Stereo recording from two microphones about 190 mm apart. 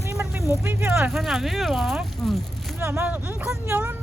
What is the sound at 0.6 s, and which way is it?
Speech, 10° right (ahead or behind).